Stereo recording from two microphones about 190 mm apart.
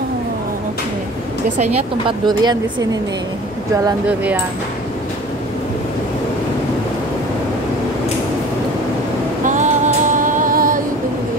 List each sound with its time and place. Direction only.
1.6 s a woman's voice: 25° right (ahead or behind)
9.4 s music: 40° right (ahead or behind)